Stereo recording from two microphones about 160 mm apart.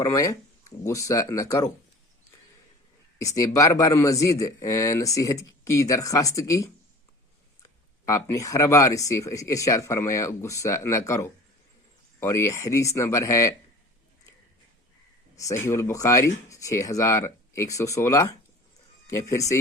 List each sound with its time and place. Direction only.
0.0 s speech: 20° left (ahead or behind)
3.2 s speech: 20° left (ahead or behind)
8.0 s speech: 20° left (ahead or behind)
15.4 s speech: 20° left (ahead or behind)